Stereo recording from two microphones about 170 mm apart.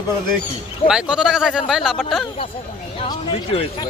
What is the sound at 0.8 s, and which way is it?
Speech, 5° right (ahead or behind).